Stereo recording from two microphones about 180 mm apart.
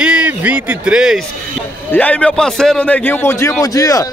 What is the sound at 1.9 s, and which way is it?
A man's voice, 10° left (ahead or behind).